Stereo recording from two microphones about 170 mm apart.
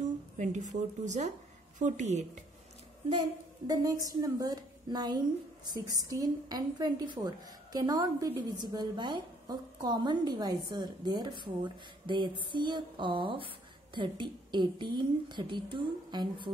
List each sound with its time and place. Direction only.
0.0 s a woman's voice: 45° right (ahead or behind)
3.1 s a woman's voice: 25° right (ahead or behind)